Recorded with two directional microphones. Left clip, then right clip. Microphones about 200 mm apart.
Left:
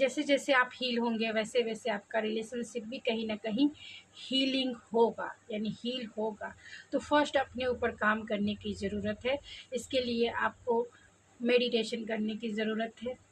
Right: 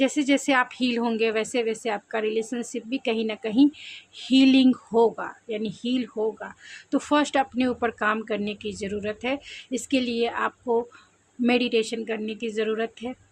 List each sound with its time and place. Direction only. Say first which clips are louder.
0.0 s a woman's voice: right 6 dB; 50° right (ahead or behind)